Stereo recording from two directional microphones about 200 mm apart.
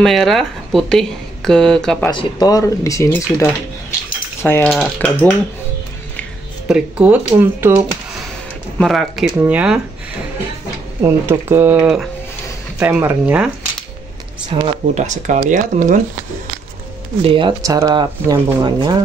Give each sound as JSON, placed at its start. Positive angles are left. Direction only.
{"t": 0.0, "sound": "speech", "side_deg": 0}
{"t": 2.0, "sound": "speech", "side_deg": 20}
{"t": 4.4, "sound": "cutlery", "side_deg": 10}
{"t": 4.6, "sound": "speech", "side_deg": 0}
{"t": 6.7, "sound": "speech", "side_deg": -5}
{"t": 8.7, "sound": "speech", "side_deg": 0}
{"t": 11.0, "sound": "speech", "side_deg": -15}
{"t": 14.5, "sound": "speech", "side_deg": -30}
{"t": 17.2, "sound": "speech", "side_deg": -25}